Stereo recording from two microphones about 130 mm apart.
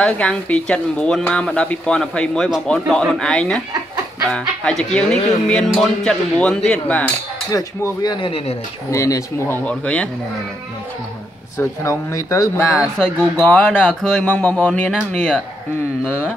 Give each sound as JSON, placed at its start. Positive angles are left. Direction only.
{"t": 0.0, "sound": "speech", "side_deg": 10}
{"t": 7.5, "sound": "speech", "side_deg": 30}
{"t": 9.7, "sound": "speech", "side_deg": 10}
{"t": 11.5, "sound": "speech", "side_deg": 25}
{"t": 13.0, "sound": "speech", "side_deg": 10}